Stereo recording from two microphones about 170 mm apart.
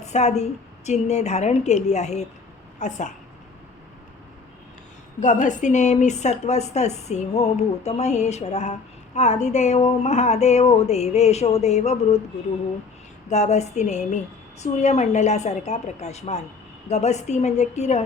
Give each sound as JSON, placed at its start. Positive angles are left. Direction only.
{"t": 0.0, "sound": "a woman's voice", "side_deg": 40}
{"t": 5.2, "sound": "a woman's voice", "side_deg": 45}
{"t": 13.3, "sound": "a woman's voice", "side_deg": 40}